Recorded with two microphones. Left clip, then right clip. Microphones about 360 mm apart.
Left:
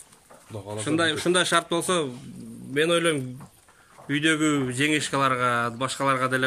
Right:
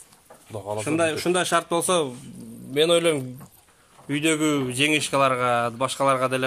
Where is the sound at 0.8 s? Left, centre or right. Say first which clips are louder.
Even; centre.